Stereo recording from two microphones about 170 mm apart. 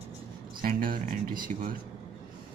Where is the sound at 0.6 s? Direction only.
55° right (ahead or behind).